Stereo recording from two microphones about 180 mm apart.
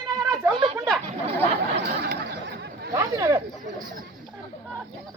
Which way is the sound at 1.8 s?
60° right (ahead or behind).